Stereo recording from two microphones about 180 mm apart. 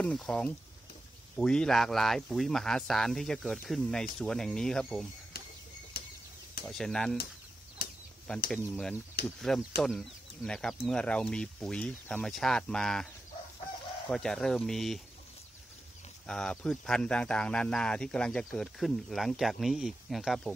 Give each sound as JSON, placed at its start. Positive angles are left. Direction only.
{"t": 0.0, "sound": "speech", "side_deg": 5}
{"t": 6.6, "sound": "speech", "side_deg": 0}
{"t": 8.5, "sound": "speech", "side_deg": 0}
{"t": 9.2, "sound": "speech", "side_deg": 60}
{"t": 9.8, "sound": "speech", "side_deg": 0}
{"t": 16.3, "sound": "speech", "side_deg": 5}